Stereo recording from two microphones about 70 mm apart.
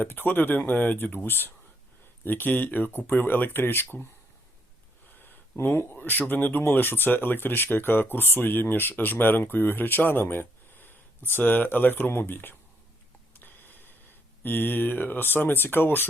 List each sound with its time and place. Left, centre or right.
0.0 s speech: left
5.5 s speech: left
13.3 s a sound: left